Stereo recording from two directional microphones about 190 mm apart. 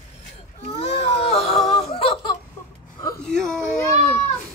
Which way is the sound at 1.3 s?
35° left (ahead or behind).